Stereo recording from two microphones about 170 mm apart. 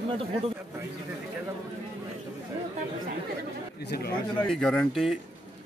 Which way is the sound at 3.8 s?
70° left (ahead or behind).